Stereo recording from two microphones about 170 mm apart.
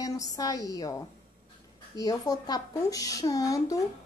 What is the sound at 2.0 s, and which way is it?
A woman's voice, 20° left (ahead or behind).